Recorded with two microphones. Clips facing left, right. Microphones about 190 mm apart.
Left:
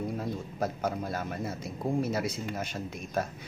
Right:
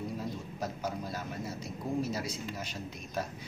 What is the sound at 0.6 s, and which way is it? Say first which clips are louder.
A man's voice: left 6 dB; 55° left (ahead or behind).